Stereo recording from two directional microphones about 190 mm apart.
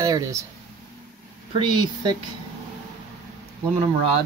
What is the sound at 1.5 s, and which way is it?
Speech, 25° right (ahead or behind).